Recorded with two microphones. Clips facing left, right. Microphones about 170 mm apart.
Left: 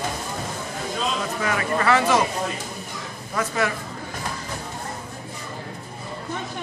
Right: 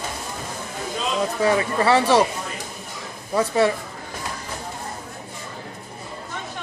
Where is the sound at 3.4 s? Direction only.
30° right (ahead or behind).